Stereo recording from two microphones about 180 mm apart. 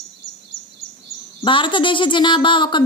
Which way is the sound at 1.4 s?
25° left (ahead or behind).